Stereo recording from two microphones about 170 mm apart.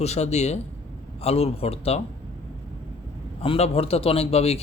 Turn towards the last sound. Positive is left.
turn(degrees=35)  # may be behind; listen again after turning